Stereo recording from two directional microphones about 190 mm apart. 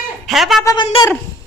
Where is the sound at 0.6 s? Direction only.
20° left (ahead or behind).